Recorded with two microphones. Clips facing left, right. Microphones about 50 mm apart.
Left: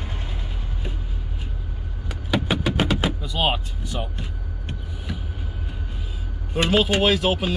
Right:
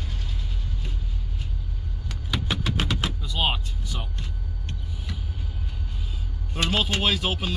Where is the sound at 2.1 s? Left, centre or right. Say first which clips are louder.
Left 6 dB; centre.